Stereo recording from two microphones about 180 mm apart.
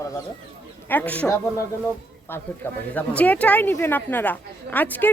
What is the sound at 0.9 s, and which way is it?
Speech, 10° left (ahead or behind).